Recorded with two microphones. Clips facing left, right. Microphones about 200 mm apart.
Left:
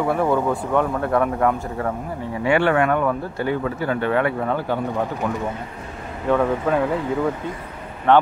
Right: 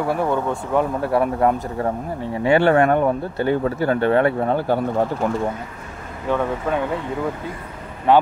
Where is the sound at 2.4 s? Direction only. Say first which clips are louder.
Right 3 dB; 35° right (ahead or behind).